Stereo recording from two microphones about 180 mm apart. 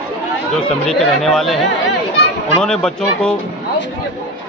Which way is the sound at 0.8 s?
Centre (ahead or behind).